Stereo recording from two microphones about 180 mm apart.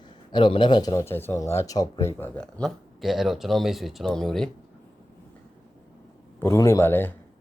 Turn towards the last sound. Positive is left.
turn(degrees=10)  # may be behind; listen again after turning